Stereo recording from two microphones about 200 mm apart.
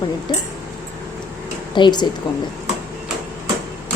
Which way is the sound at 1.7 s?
20° left (ahead or behind).